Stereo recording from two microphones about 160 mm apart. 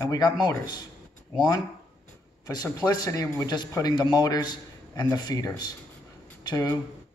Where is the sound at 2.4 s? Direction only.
20° left (ahead or behind).